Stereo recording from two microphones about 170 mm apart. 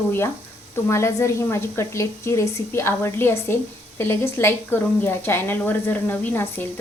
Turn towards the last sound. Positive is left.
turn(degrees=10)  # may be behind; listen again after turning